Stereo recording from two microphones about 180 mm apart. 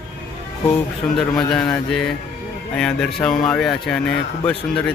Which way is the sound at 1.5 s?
5° left (ahead or behind).